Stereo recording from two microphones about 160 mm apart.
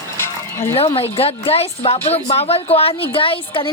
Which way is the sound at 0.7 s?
35° left (ahead or behind).